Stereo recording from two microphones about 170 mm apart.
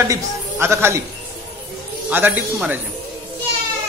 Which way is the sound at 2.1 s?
10° right (ahead or behind).